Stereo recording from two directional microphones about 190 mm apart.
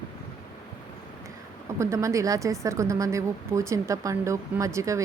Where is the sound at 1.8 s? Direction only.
15° right (ahead or behind).